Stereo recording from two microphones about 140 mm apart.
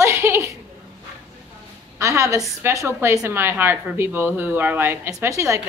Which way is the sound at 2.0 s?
20° right (ahead or behind).